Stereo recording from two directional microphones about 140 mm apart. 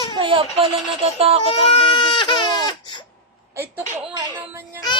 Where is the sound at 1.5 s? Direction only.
40° left (ahead or behind).